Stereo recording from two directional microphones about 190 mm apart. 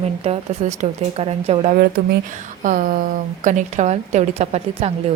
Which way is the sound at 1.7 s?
55° right (ahead or behind).